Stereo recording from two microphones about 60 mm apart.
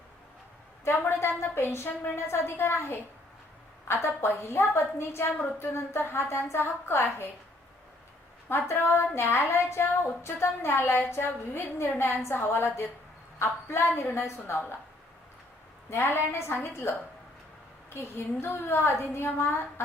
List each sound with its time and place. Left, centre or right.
0.9 s a woman's voice: left
8.4 s a woman's voice: left
15.9 s a woman's voice: left
17.9 s a woman's voice: left